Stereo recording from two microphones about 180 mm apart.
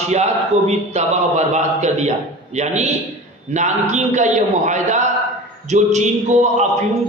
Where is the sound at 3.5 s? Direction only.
40° right (ahead or behind).